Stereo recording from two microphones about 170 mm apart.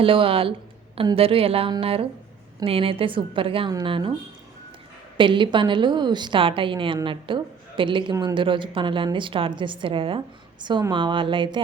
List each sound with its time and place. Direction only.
0.0 s a woman's voice: 30° right (ahead or behind)
5.1 s a woman's voice: 30° right (ahead or behind)